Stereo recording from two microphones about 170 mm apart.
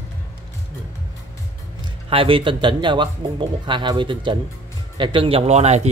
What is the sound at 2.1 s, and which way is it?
Speech, 30° right (ahead or behind).